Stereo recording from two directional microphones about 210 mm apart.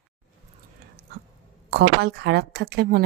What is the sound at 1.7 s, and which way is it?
Speech, 55° right (ahead or behind).